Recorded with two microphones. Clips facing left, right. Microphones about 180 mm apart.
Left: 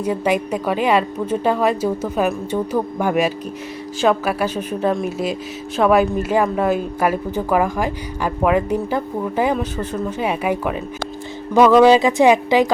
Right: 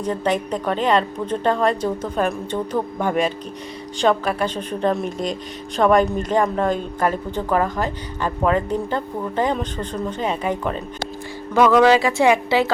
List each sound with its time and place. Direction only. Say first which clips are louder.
0.0 s a woman's voice: left 2 dB; 10° left (ahead or behind)